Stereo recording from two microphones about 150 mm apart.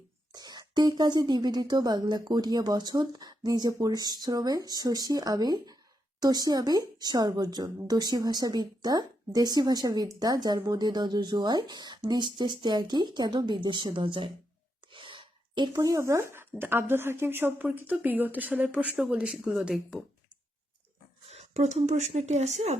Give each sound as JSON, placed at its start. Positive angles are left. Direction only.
{"t": 0.3, "sound": "speech", "side_deg": -25}
{"t": 21.2, "sound": "speech", "side_deg": -45}